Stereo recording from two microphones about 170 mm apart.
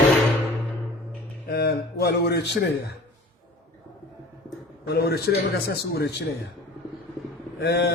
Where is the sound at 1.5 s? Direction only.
70° left (ahead or behind).